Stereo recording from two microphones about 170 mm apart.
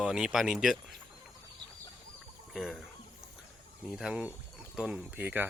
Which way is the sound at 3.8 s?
Centre (ahead or behind).